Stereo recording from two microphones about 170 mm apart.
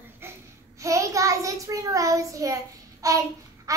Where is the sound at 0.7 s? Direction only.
20° right (ahead or behind).